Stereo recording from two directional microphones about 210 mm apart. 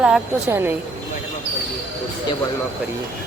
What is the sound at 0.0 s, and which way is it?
Speech, 5° right (ahead or behind).